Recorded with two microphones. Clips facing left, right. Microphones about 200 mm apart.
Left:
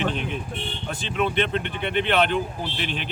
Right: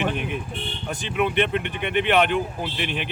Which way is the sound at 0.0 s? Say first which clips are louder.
Right 1 dB; 10° right (ahead or behind).